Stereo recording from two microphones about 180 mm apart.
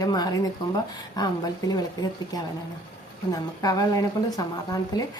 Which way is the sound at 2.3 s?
20° left (ahead or behind).